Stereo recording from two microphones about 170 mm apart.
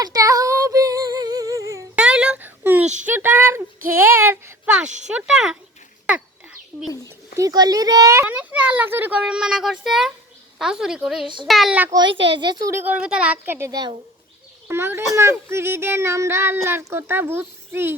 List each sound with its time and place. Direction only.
0.0 s a sound: 20° right (ahead or behind)
2.0 s a sound: 5° right (ahead or behind)
3.1 s a child's voice: 10° right (ahead or behind)
7.3 s a child's voice: 20° right (ahead or behind); by 11.9 s 5° right (ahead or behind)
11.9 s speech: 25° right (ahead or behind)
12.1 s a child's voice: 90° right
12.4 s speech: 25° right (ahead or behind)
12.8 s a child's voice: 5° right (ahead or behind)